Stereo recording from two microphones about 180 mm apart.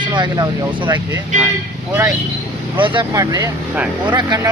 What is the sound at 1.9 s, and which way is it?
Speech, 10° right (ahead or behind).